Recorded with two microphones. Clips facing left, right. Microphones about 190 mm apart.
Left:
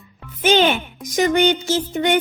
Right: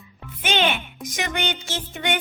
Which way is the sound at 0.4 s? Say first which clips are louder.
Left 7 dB; 40° left (ahead or behind).